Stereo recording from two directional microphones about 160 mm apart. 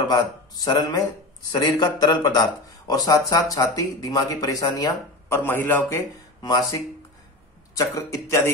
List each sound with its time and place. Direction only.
0.1 s speech: 25° left (ahead or behind)
7.7 s speech: 20° left (ahead or behind)